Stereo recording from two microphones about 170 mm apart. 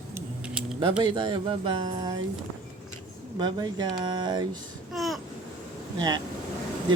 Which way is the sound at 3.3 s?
25° right (ahead or behind).